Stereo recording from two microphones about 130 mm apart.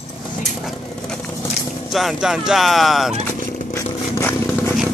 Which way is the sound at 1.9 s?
Centre (ahead or behind).